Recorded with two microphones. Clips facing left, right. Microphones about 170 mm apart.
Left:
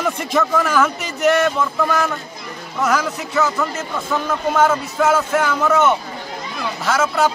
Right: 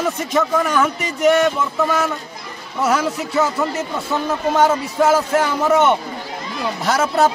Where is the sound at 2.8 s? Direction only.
30° right (ahead or behind).